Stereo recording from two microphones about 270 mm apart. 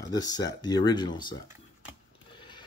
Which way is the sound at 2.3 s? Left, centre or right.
Centre.